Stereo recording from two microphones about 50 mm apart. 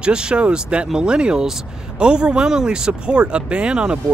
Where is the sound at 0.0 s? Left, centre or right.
Centre.